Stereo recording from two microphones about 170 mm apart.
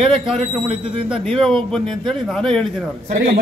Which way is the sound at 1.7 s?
5° left (ahead or behind).